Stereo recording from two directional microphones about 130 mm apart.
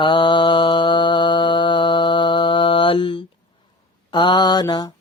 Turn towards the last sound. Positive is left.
turn(degrees=30)  # may be behind; listen again after turning